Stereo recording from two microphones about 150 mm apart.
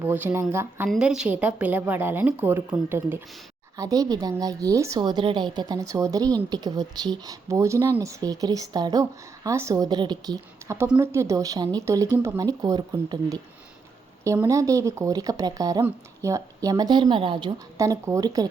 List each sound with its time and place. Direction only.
0.0 s a woman's voice: 15° right (ahead or behind)
0.9 s a woman's voice: 5° right (ahead or behind); by 13.4 s 25° right (ahead or behind)
14.4 s a woman's voice: 20° right (ahead or behind)
17.7 s a woman's voice: 20° right (ahead or behind)